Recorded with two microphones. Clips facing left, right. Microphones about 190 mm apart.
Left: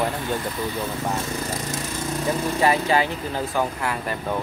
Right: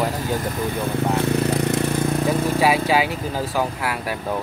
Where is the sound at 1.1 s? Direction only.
65° right (ahead or behind).